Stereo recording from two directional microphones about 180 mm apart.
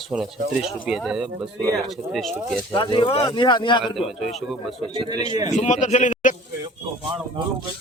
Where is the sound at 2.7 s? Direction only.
25° left (ahead or behind).